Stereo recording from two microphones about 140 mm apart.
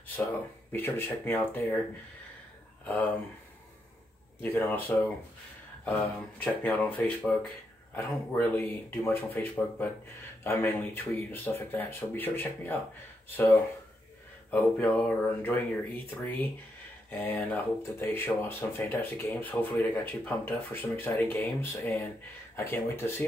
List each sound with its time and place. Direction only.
0.7 s speech: 15° left (ahead or behind)
2.8 s speech: 10° left (ahead or behind)
4.4 s speech: 15° left (ahead or behind)
7.9 s speech: 15° left (ahead or behind)
14.5 s speech: 10° left (ahead or behind)
17.1 s speech: 15° left (ahead or behind)